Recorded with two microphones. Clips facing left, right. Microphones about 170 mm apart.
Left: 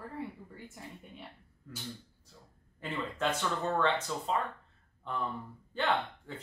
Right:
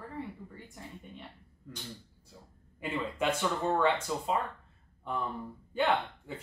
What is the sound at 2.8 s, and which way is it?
Speech, 10° right (ahead or behind).